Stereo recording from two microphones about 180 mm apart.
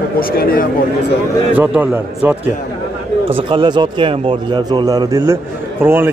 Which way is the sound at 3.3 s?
30° right (ahead or behind).